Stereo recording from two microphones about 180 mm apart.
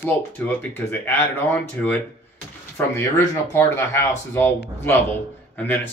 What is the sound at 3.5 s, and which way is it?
Speech, 15° left (ahead or behind).